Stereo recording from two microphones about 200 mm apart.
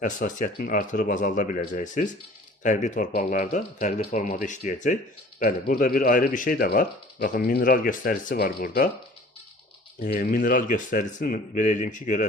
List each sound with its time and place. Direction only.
0.0 s speech: 40° left (ahead or behind)
10.0 s speech: 40° left (ahead or behind)